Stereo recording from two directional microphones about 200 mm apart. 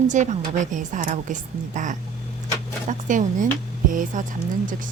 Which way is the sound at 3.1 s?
40° right (ahead or behind).